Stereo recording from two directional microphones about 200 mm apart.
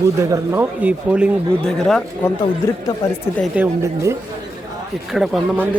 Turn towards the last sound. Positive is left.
turn(degrees=0)  # may be behind; listen again after turning